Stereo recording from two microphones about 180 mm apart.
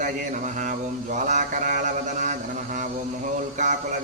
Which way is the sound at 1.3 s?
45° right (ahead or behind).